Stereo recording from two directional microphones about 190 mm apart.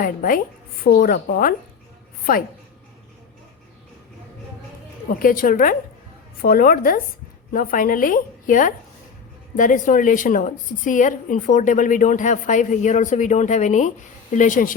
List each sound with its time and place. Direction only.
0.0 s a woman's voice: 45° left (ahead or behind)
5.0 s a woman's voice: 45° left (ahead or behind)